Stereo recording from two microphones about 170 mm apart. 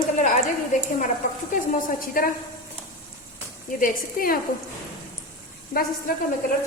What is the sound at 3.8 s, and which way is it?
Speech, 55° left (ahead or behind).